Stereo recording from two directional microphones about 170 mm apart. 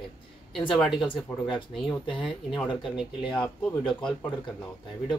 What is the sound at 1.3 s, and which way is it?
Speech, 25° left (ahead or behind).